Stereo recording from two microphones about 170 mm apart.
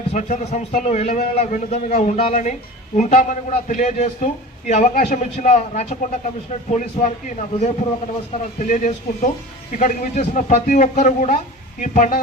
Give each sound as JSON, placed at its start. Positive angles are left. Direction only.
{"t": 0.1, "sound": "a man's voice", "side_deg": 45}